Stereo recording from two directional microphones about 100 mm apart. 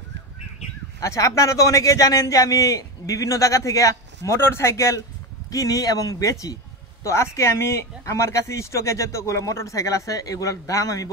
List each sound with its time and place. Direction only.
0.9 s speech: 35° left (ahead or behind)